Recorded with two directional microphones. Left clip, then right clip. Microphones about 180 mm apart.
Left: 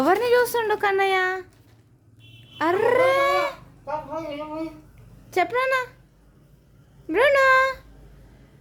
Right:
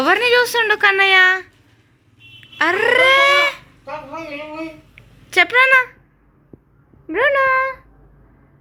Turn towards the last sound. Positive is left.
turn(degrees=15)  # may be behind; listen again after turning